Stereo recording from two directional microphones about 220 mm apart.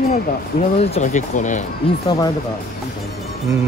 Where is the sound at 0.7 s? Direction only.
30° left (ahead or behind).